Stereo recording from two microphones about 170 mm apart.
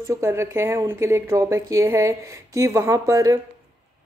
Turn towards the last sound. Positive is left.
turn(degrees=-20)  # may be behind; listen again after turning